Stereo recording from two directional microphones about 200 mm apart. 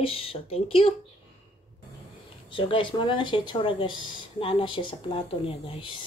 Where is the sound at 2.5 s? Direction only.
25° left (ahead or behind).